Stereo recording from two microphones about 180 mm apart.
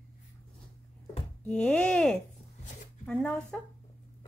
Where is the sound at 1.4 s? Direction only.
5° left (ahead or behind).